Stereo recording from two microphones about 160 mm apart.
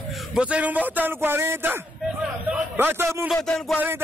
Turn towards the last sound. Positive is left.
turn(degrees=5)  # may be behind; listen again after turning